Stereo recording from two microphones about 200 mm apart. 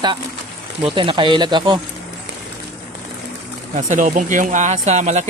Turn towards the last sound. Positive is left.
turn(degrees=-35)  # may be behind; listen again after turning